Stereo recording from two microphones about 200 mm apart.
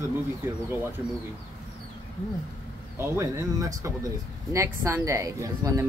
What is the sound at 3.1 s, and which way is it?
Speech, 15° right (ahead or behind).